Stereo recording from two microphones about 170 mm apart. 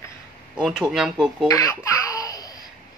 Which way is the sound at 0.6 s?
5° right (ahead or behind).